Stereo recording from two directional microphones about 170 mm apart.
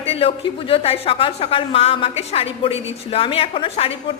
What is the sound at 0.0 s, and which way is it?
A woman's voice, 35° left (ahead or behind).